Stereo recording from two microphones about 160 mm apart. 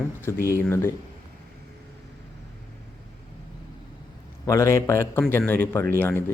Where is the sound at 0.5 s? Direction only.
15° left (ahead or behind).